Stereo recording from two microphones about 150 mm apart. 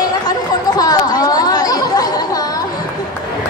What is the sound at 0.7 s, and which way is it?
Chatter, 25° left (ahead or behind).